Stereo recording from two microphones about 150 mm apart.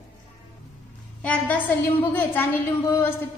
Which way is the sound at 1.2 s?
10° left (ahead or behind).